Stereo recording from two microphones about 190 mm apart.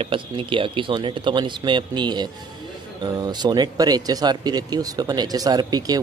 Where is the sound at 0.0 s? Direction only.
25° right (ahead or behind).